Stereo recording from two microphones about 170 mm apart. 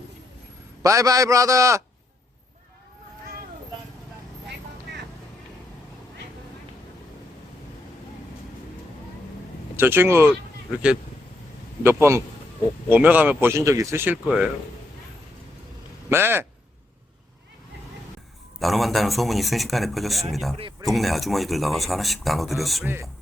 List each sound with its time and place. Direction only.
0.8 s a man's voice: 20° right (ahead or behind)
9.7 s speech: 15° right (ahead or behind)
11.8 s speech: 15° right (ahead or behind)
16.0 s speech: 15° right (ahead or behind)
18.6 s speech: centre (ahead or behind)